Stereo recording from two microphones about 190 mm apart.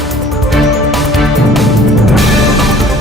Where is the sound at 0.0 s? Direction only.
Centre (ahead or behind).